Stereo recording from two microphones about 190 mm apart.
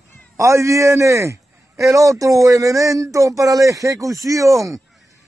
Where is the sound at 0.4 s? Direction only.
15° right (ahead or behind).